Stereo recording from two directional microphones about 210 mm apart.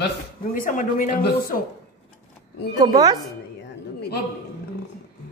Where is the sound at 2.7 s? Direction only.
20° right (ahead or behind).